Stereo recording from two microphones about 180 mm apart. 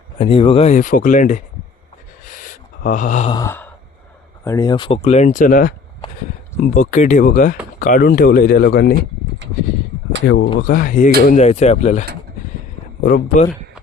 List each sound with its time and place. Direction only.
0.2 s speech: 30° left (ahead or behind)
2.2 s gasp: 45° left (ahead or behind)
3.2 s sigh: 20° left (ahead or behind)
4.4 s speech: 20° left (ahead or behind); by 9.0 s 60° left (ahead or behind)
10.2 s speech: 85° left
10.7 s speech: 50° left (ahead or behind)
13.0 s speech: 50° left (ahead or behind)